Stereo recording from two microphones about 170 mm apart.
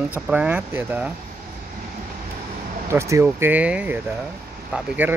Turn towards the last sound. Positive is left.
turn(degrees=-10)  # may be behind; listen again after turning